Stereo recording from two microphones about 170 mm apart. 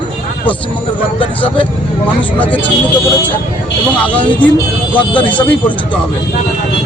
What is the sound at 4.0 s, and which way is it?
Speech, 10° left (ahead or behind).